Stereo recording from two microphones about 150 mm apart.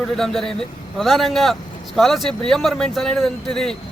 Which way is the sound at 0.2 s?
5° left (ahead or behind).